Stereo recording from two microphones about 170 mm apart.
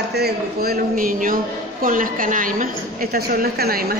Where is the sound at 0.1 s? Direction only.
65° right (ahead or behind).